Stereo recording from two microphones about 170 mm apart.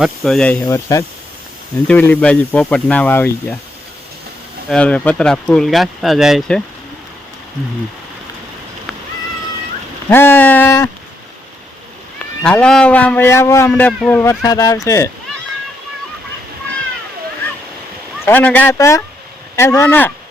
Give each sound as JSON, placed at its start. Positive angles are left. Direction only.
{"t": 0.0, "sound": "speech", "side_deg": 0}
{"t": 0.7, "sound": "speech", "side_deg": 20}
{"t": 1.9, "sound": "a man's voice", "side_deg": 10}
{"t": 4.7, "sound": "speech", "side_deg": 5}
{"t": 10.1, "sound": "a man's voice", "side_deg": 10}
{"t": 12.4, "sound": "a man's voice", "side_deg": 5}
{"t": 14.4, "sound": "speech", "side_deg": 20}
{"t": 18.3, "sound": "a man's voice", "side_deg": 10}